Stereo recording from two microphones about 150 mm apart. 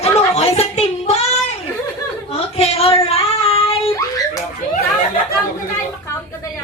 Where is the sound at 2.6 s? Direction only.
40° left (ahead or behind).